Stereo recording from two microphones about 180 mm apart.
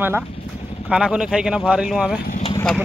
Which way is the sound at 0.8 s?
5° right (ahead or behind).